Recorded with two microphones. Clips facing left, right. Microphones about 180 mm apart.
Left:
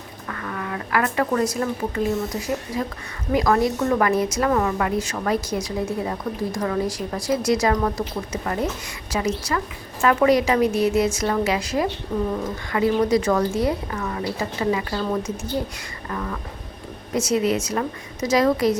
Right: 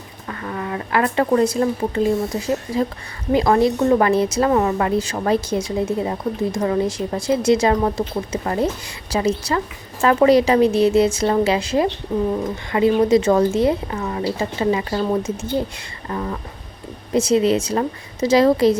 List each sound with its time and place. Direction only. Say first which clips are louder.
0.3 s speech: right 3 dB; 25° right (ahead or behind)
3.3 s speech: right 4 dB; 25° right (ahead or behind)